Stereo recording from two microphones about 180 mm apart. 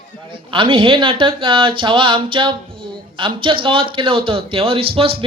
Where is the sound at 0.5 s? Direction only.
30° right (ahead or behind).